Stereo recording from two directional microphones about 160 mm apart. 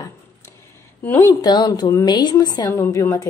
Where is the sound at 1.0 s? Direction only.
15° left (ahead or behind).